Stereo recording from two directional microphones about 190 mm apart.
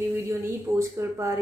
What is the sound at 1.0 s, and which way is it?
Speech, 15° right (ahead or behind).